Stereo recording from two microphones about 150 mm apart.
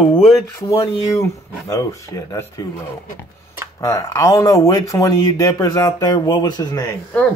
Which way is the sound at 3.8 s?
20° left (ahead or behind).